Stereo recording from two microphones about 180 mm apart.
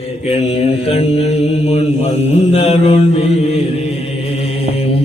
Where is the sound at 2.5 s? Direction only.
35° left (ahead or behind).